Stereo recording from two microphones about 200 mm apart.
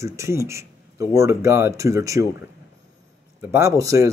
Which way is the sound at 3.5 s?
15° right (ahead or behind).